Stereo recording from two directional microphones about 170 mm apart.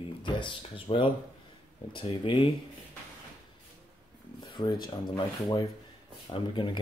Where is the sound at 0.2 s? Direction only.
30° left (ahead or behind).